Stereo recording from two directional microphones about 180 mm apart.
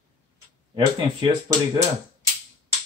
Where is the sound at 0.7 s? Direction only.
25° right (ahead or behind).